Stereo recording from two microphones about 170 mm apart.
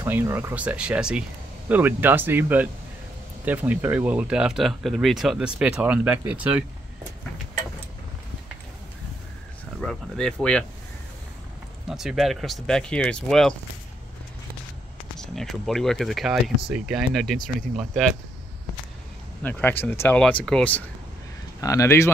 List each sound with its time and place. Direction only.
0.0 s speech: 10° right (ahead or behind)
9.8 s speech: 5° left (ahead or behind)
11.9 s speech: centre (ahead or behind)
15.1 s speech: centre (ahead or behind)
19.4 s speech: 10° left (ahead or behind)
21.5 s speech: 20° left (ahead or behind)